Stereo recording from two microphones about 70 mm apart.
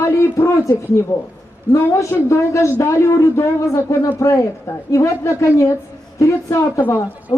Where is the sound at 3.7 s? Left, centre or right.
Left.